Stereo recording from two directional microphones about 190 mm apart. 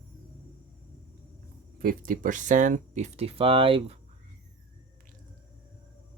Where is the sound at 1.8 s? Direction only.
50° right (ahead or behind); by 4.0 s 30° right (ahead or behind).